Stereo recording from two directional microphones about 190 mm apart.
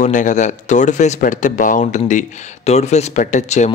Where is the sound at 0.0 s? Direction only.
40° left (ahead or behind).